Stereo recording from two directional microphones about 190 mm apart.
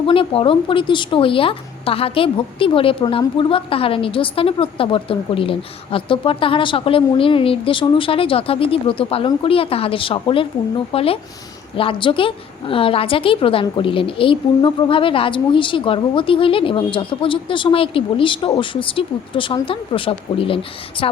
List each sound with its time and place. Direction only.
0.1 s a woman's voice: 30° left (ahead or behind)